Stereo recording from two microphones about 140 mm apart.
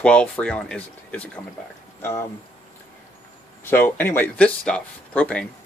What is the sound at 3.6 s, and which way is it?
Speech, 15° left (ahead or behind).